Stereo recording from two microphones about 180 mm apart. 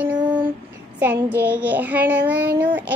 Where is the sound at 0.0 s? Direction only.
10° right (ahead or behind).